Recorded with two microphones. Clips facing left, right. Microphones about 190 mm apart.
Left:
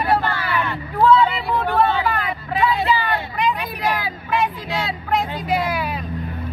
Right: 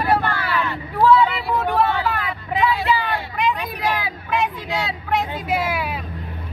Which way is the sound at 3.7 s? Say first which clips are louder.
Left 1 dB; centre (ahead or behind).